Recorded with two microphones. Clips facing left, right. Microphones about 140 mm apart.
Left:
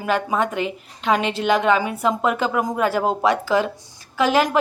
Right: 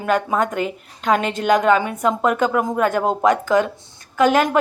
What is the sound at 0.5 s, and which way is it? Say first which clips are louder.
Speech: right 1 dB; 45° right (ahead or behind).